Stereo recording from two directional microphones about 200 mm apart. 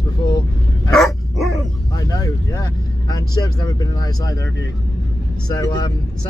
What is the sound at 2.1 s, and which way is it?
Speech, 20° left (ahead or behind).